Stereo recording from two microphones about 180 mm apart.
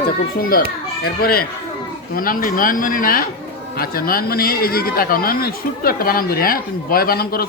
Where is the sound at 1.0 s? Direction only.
55° left (ahead or behind).